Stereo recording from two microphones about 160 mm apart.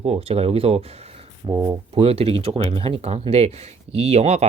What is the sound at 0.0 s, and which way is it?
Speech, 40° right (ahead or behind).